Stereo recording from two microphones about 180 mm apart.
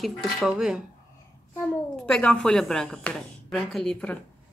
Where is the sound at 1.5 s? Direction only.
5° left (ahead or behind).